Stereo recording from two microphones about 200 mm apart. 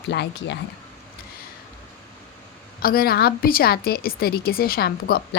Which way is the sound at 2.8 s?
50° left (ahead or behind).